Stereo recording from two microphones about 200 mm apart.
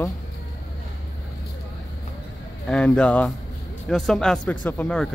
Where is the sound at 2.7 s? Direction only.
5° left (ahead or behind).